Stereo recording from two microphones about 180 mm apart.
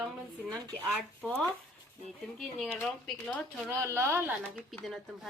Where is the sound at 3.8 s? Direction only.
15° right (ahead or behind).